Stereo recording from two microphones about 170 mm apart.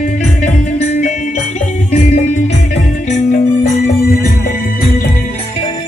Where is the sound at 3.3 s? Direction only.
50° left (ahead or behind).